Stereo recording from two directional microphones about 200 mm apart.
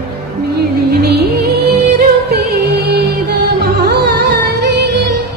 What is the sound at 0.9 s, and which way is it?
Music, 50° right (ahead or behind).